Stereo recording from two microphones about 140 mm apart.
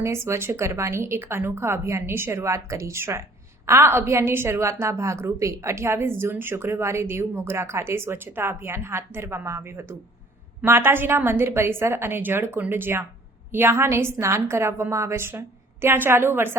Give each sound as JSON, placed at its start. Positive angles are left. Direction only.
{"t": 0.0, "sound": "a woman's voice", "side_deg": -20}